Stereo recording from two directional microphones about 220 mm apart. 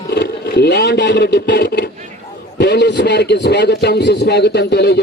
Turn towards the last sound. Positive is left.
turn(degrees=50)  # may be behind; listen again after turning